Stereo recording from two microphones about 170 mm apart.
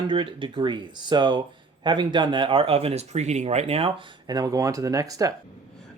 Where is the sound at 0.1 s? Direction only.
30° right (ahead or behind).